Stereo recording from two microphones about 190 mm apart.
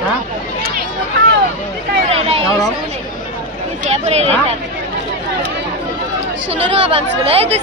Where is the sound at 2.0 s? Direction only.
30° right (ahead or behind).